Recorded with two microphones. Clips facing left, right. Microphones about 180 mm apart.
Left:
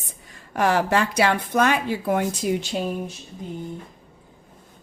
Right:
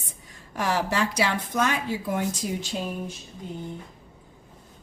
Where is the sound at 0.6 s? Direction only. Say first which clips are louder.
Left 5 dB; 55° left (ahead or behind).